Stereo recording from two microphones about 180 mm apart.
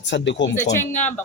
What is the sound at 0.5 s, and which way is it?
Speech, 15° left (ahead or behind).